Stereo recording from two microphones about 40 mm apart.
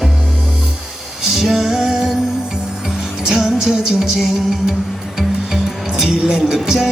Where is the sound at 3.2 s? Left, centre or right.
Centre.